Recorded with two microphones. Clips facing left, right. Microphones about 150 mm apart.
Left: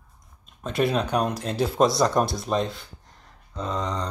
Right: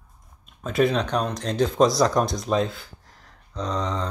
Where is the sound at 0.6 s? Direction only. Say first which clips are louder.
Right 2 dB; centre (ahead or behind).